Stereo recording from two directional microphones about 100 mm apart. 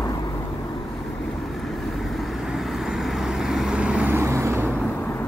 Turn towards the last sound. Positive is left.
turn(degrees=-25)  # may be behind; listen again after turning